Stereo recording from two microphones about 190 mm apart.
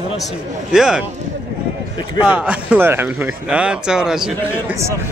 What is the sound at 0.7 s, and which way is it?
Speech, 5° right (ahead or behind).